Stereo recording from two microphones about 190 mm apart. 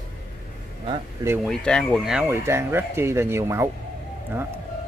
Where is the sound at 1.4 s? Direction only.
5° left (ahead or behind); by 3.6 s 15° right (ahead or behind).